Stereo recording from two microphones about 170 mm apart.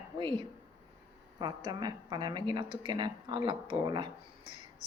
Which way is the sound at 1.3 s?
25° right (ahead or behind).